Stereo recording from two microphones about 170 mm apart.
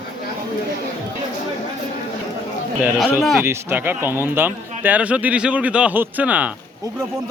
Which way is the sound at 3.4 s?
15° right (ahead or behind).